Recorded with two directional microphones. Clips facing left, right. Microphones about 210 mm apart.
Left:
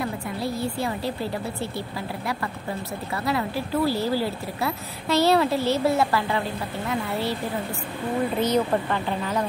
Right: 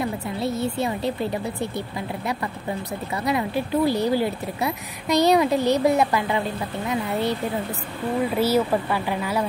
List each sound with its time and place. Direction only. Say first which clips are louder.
0.0 s a woman's voice: right 2 dB; 20° right (ahead or behind)
3.3 s speech: right 3 dB; 20° right (ahead or behind)
8.4 s speech: right 2 dB; 10° right (ahead or behind)